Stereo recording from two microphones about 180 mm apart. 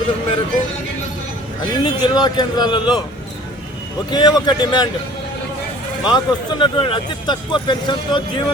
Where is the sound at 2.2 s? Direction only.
25° left (ahead or behind).